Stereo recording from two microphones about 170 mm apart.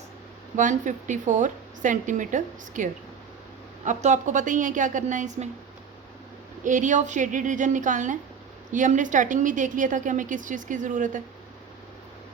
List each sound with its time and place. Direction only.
0.5 s a woman's voice: 45° right (ahead or behind)
6.7 s a woman's voice: 50° right (ahead or behind)